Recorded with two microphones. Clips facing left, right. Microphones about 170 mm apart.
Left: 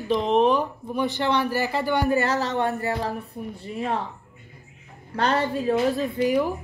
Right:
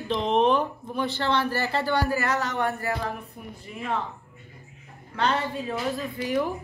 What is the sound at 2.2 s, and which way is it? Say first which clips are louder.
A woman's voice: left 3 dB; 30° left (ahead or behind).